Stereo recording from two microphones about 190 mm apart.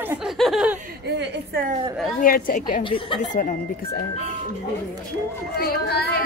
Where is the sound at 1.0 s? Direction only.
65° right (ahead or behind).